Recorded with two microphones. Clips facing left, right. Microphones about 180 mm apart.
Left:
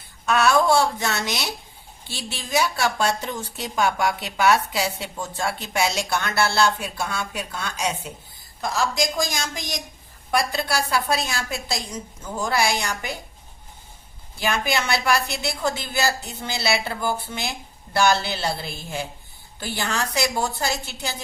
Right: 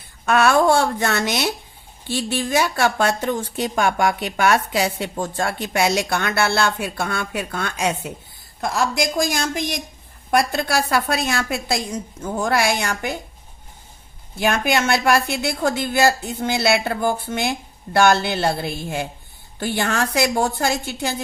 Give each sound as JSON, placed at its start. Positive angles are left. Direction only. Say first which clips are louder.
{"t": 0.3, "sound": "a woman's voice", "louder": "right 3 dB", "side_deg": -55}
{"t": 14.3, "sound": "a woman's voice", "louder": "right 5 dB", "side_deg": -55}